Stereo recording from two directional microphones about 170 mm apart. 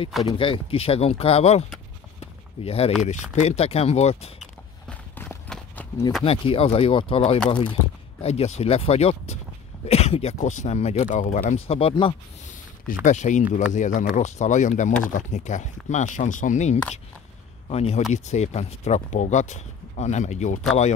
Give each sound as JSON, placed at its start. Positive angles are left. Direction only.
{"t": 0.3, "sound": "speech", "side_deg": 30}
{"t": 2.1, "sound": "a sound", "side_deg": 35}
{"t": 3.0, "sound": "speech", "side_deg": 40}
{"t": 4.4, "sound": "walk", "side_deg": 10}
{"t": 6.2, "sound": "speech", "side_deg": 35}
{"t": 13.0, "sound": "speech", "side_deg": 45}